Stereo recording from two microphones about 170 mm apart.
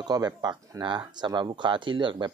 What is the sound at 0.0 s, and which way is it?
Speech, 25° right (ahead or behind).